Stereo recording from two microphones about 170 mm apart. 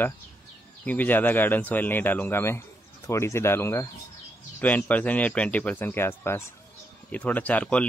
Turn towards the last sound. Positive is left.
turn(degrees=10)  # may be behind; listen again after turning